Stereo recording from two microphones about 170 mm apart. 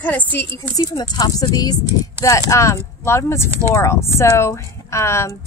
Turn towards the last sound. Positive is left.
turn(degrees=15)  # may be behind; listen again after turning